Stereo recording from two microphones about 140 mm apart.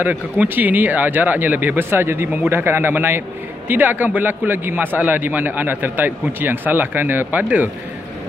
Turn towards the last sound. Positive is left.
turn(degrees=-10)  # may be behind; listen again after turning